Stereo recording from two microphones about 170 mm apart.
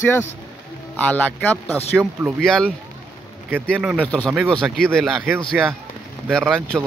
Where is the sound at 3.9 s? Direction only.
5° left (ahead or behind).